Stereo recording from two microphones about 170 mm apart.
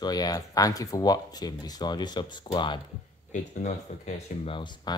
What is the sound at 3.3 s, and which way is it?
Speech, 45° left (ahead or behind).